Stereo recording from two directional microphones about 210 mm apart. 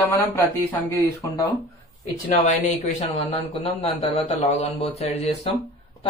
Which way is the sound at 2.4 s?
35° left (ahead or behind).